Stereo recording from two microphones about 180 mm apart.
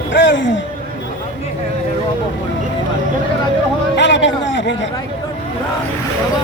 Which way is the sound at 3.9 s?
85° left.